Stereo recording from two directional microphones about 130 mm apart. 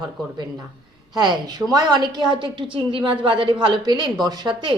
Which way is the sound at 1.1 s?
35° right (ahead or behind).